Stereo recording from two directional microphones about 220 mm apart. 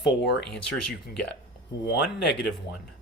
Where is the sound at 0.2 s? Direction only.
50° left (ahead or behind).